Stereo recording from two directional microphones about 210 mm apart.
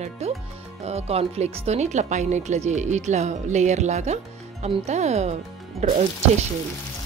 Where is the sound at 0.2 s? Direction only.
30° right (ahead or behind).